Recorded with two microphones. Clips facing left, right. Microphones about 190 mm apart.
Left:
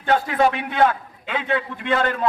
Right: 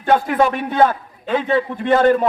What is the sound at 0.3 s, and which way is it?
A man's voice, 45° right (ahead or behind).